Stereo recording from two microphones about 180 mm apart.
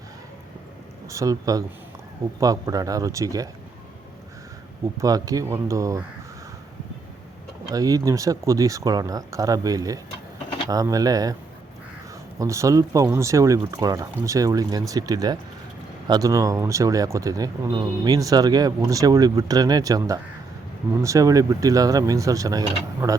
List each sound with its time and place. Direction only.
1.1 s speech: 20° right (ahead or behind)
4.9 s speech: 20° right (ahead or behind)
7.7 s speech: 20° right (ahead or behind)
12.4 s speech: 15° right (ahead or behind)